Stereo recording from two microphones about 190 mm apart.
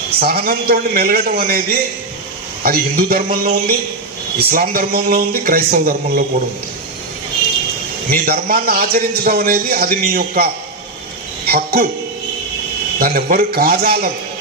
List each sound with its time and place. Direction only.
0.2 s a man's voice: 50° right (ahead or behind)
8.1 s a man's voice: 50° right (ahead or behind)
13.0 s a man's voice: 50° right (ahead or behind)